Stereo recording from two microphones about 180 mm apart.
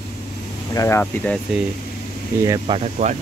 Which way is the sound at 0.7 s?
15° left (ahead or behind).